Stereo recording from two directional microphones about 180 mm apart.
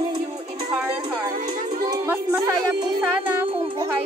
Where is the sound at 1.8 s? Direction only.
25° right (ahead or behind).